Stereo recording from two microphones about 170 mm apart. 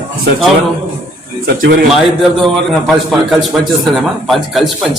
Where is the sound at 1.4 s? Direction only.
70° right (ahead or behind).